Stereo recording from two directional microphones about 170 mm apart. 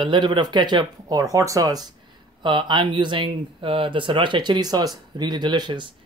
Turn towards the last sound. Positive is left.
turn(degrees=-25)  # may be behind; listen again after turning